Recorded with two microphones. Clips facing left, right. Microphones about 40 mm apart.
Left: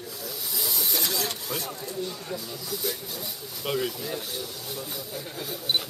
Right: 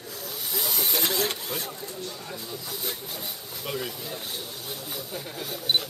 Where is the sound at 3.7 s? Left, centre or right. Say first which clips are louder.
Left 4 dB; centre.